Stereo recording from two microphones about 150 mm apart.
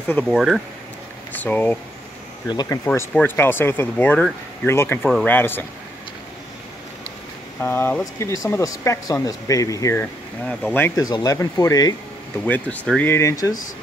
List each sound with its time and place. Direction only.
0.2 s speech: 5° right (ahead or behind)
1.3 s speech: 10° left (ahead or behind)
2.4 s speech: 30° left (ahead or behind)
7.6 s speech: 10° left (ahead or behind)
8.0 s speech: 20° left (ahead or behind)
10.4 s speech: 10° left (ahead or behind)
11.0 s speech: 25° left (ahead or behind)
12.4 s speech: 10° left (ahead or behind)